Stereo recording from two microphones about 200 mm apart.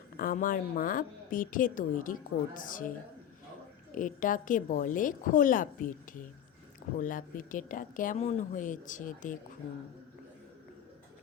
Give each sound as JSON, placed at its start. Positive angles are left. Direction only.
{"t": 0.2, "sound": "a woman's voice", "side_deg": 45}
{"t": 3.9, "sound": "speech", "side_deg": 40}